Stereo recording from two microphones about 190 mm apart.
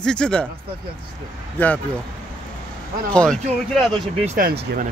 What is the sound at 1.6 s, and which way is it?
Speech, 10° left (ahead or behind).